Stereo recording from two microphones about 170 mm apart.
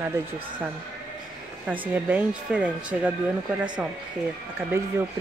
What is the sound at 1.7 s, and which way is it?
Speech, 10° right (ahead or behind).